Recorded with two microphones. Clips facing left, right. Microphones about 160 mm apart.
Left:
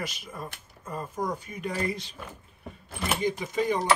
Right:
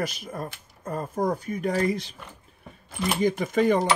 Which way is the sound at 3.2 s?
55° right (ahead or behind).